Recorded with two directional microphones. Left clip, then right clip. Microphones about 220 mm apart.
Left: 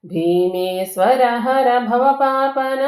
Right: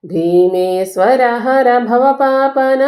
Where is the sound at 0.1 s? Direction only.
30° right (ahead or behind).